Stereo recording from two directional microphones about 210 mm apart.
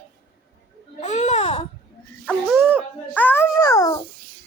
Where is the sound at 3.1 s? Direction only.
10° left (ahead or behind).